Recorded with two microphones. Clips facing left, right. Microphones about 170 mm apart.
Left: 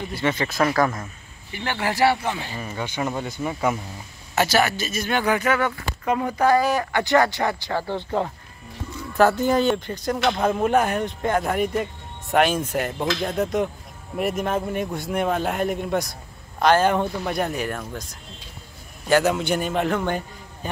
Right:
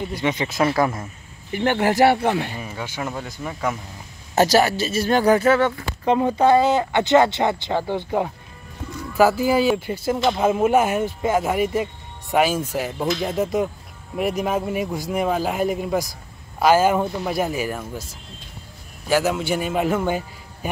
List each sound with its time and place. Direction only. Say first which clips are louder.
0.1 s speech: right 1 dB; 15° right (ahead or behind)
1.5 s speech: right 7 dB; 50° right (ahead or behind)
2.5 s speech: left 1 dB; 5° right (ahead or behind)
4.4 s speech: right 4 dB; 35° right (ahead or behind); by 18.0 s 5° right (ahead or behind)
19.0 s speech: left 1 dB; 5° right (ahead or behind)